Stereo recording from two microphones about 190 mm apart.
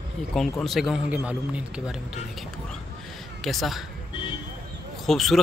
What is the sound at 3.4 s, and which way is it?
Speech, centre (ahead or behind).